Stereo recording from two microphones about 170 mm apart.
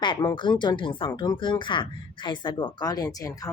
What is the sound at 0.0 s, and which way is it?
A woman's voice, 25° left (ahead or behind).